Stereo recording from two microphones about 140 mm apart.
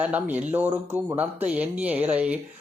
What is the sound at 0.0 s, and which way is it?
Speech, 10° right (ahead or behind).